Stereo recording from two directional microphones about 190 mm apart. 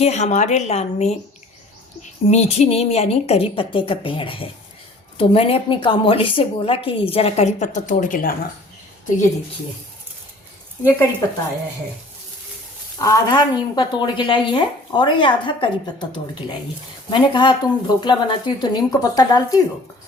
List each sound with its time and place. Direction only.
0.0 s a woman's voice: 35° left (ahead or behind)
13.0 s a woman's voice: 20° left (ahead or behind)